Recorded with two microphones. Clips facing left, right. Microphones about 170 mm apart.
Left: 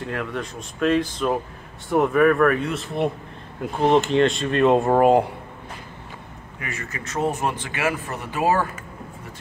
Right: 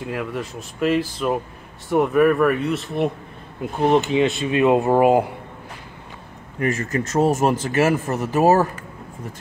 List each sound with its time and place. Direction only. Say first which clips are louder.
0.0 s speech: right 1 dB; 5° right (ahead or behind)
6.6 s speech: right 12 dB; 45° right (ahead or behind)